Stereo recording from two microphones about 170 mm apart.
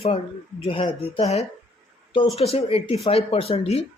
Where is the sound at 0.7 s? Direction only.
30° left (ahead or behind).